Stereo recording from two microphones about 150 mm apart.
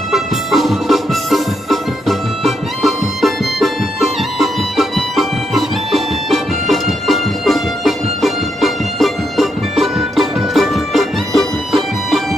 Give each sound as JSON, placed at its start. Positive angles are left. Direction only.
{"t": 0.1, "sound": "music", "side_deg": 0}